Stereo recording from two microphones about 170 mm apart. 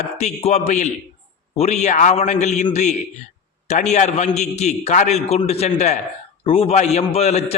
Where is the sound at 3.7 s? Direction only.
45° left (ahead or behind).